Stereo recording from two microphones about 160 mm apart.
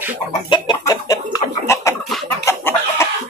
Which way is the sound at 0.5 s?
25° left (ahead or behind).